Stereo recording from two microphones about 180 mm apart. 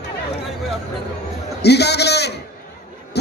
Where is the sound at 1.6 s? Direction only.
65° left (ahead or behind).